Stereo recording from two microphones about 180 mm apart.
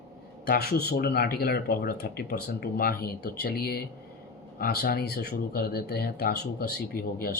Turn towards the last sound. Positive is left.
turn(degrees=55)  # may be behind; listen again after turning